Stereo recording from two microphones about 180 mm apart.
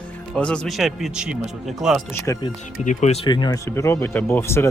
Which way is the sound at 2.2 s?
20° left (ahead or behind).